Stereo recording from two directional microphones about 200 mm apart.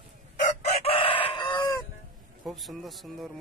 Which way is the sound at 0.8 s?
30° left (ahead or behind).